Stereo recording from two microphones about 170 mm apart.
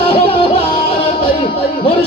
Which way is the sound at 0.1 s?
30° left (ahead or behind).